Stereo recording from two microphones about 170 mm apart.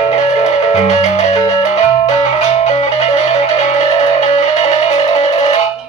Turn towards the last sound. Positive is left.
turn(degrees=40)  # may be behind; listen again after turning